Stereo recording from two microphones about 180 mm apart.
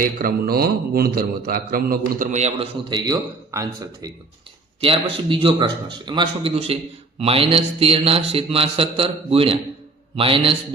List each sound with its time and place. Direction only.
0.0 s a man's voice: 55° right (ahead or behind)
2.9 s a man's voice: 20° right (ahead or behind)
4.8 s a man's voice: 30° right (ahead or behind)